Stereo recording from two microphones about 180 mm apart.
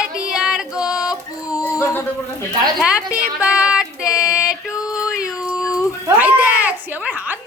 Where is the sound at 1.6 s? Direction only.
15° left (ahead or behind).